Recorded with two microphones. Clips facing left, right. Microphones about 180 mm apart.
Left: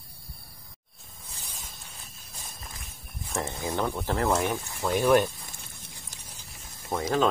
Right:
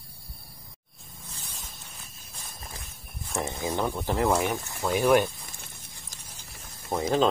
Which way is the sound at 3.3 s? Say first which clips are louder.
Right 1 dB; 15° right (ahead or behind).